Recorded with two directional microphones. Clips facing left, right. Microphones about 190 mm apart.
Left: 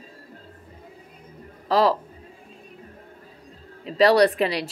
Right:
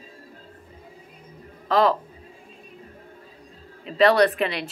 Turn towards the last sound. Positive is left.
turn(degrees=35)  # may be behind; listen again after turning